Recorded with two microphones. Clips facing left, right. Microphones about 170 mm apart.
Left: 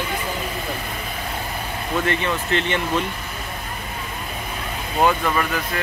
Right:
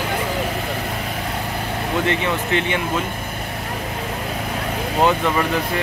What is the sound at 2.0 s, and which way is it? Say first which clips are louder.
Speech: right 2 dB; 15° right (ahead or behind).